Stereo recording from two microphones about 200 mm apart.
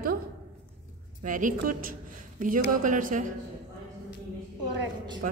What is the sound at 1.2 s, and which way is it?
A woman's voice, 40° right (ahead or behind).